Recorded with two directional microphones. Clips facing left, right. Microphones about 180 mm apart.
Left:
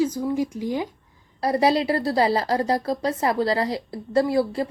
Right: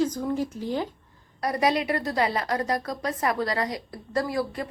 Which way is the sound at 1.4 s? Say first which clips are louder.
Left 4 dB; 30° left (ahead or behind).